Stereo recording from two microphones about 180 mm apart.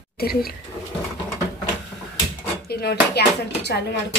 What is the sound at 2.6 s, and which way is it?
Speech, 60° left (ahead or behind).